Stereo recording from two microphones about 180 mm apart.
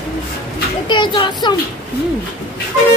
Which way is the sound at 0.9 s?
25° left (ahead or behind).